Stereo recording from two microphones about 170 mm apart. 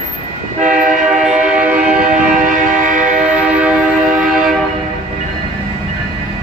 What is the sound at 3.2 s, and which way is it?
Music, 5° right (ahead or behind).